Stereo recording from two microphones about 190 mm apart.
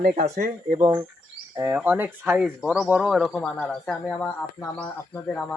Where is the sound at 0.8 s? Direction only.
15° right (ahead or behind).